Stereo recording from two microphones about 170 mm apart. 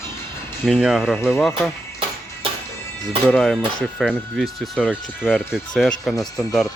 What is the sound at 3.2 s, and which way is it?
Speech, 5° left (ahead or behind).